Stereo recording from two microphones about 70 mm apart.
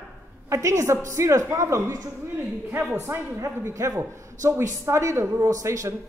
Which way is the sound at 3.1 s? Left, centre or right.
Right.